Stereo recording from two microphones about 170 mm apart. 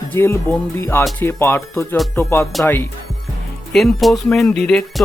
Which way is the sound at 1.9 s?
Centre (ahead or behind).